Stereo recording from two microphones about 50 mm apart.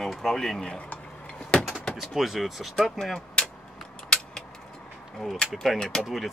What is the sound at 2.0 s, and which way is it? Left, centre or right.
Speech, centre.